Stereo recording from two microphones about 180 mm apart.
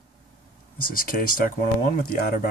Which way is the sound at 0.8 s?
55° left (ahead or behind).